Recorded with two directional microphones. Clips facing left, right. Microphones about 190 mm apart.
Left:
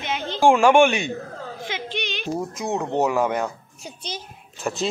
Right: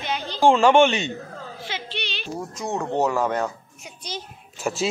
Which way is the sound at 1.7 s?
15° left (ahead or behind).